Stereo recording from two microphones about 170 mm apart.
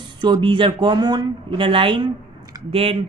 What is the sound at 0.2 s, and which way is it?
Speech, 30° right (ahead or behind).